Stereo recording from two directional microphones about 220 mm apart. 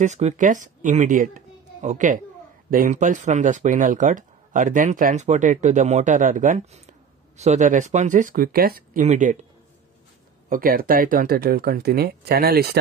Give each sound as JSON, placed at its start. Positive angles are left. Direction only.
{"t": 0.0, "sound": "a woman's voice", "side_deg": -30}
{"t": 10.5, "sound": "speech", "side_deg": -40}